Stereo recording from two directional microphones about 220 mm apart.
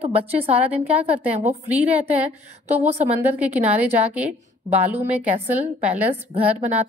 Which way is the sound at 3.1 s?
10° right (ahead or behind).